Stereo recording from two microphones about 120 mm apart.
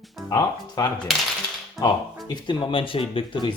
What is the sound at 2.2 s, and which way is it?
Speech, 45° left (ahead or behind).